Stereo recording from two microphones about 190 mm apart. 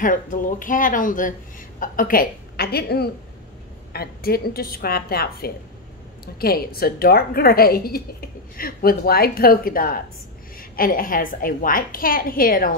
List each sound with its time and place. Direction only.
0.0 s a woman's voice: 45° left (ahead or behind)